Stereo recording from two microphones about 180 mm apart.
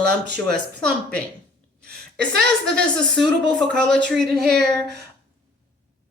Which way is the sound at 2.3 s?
65° right (ahead or behind).